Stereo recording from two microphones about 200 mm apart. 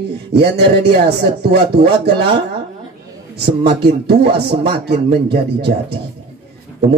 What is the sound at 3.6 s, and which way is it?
Speech, 50° right (ahead or behind).